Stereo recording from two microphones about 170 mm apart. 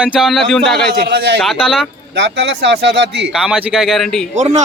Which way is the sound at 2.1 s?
90° right.